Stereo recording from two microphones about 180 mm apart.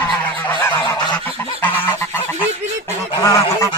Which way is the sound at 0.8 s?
25° left (ahead or behind).